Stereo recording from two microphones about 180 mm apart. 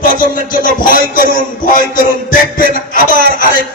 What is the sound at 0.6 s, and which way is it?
Speech, 50° left (ahead or behind).